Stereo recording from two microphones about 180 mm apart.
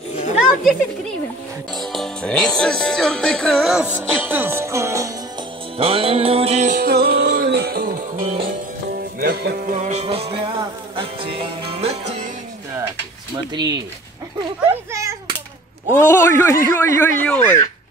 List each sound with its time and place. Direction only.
0.1 s a sound: 40° left (ahead or behind)
1.8 s music: centre (ahead or behind); by 5.1 s 15° right (ahead or behind)
5.8 s music: 30° right (ahead or behind)
6.8 s music: 60° right (ahead or behind)
8.9 s music: 60° right (ahead or behind); by 12.0 s 35° right (ahead or behind)
14.9 s a sound: 15° right (ahead or behind)
15.9 s a man's voice: 15° left (ahead or behind)